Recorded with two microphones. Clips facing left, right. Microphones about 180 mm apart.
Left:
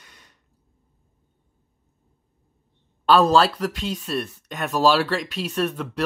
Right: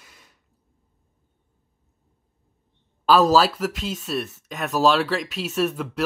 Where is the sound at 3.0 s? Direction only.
5° right (ahead or behind).